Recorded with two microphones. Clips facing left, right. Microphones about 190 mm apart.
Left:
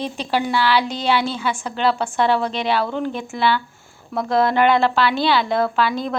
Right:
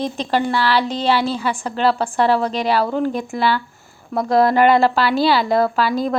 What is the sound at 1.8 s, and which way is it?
Speech, 5° right (ahead or behind).